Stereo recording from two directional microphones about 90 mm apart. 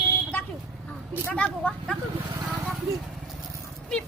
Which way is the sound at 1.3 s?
15° left (ahead or behind).